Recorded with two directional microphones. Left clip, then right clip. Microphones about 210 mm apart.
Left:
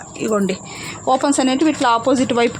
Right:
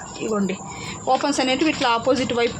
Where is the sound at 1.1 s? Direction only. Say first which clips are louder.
Left 3 dB; 40° left (ahead or behind).